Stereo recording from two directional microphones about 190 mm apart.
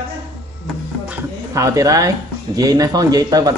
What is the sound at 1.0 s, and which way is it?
Speech, 15° right (ahead or behind).